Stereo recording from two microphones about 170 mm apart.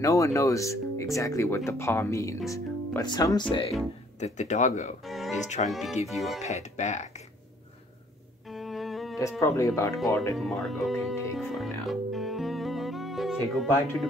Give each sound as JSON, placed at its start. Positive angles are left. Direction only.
{"t": 0.0, "sound": "speech", "side_deg": 20}
{"t": 4.2, "sound": "speech", "side_deg": 45}
{"t": 5.0, "sound": "speech", "side_deg": 0}
{"t": 6.4, "sound": "speech", "side_deg": 45}
{"t": 8.5, "sound": "music", "side_deg": 0}
{"t": 9.4, "sound": "speech", "side_deg": 15}
{"t": 10.3, "sound": "speech", "side_deg": 0}
{"t": 11.3, "sound": "music", "side_deg": 0}